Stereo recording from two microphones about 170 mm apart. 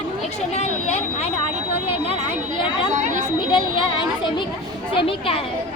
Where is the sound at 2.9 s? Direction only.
45° right (ahead or behind).